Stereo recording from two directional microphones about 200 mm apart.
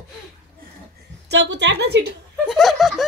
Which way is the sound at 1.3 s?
60° right (ahead or behind).